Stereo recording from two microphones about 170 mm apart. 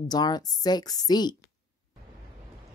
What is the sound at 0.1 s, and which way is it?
Speech, 25° left (ahead or behind).